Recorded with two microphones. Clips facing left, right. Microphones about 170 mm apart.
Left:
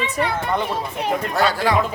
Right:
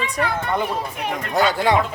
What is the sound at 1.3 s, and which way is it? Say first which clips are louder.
Speech: right 3 dB; 20° right (ahead or behind).